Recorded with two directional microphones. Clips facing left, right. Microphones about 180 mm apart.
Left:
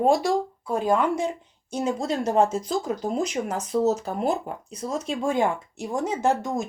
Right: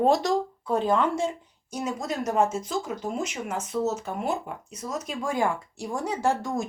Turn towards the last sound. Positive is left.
turn(degrees=20)  # may be behind; listen again after turning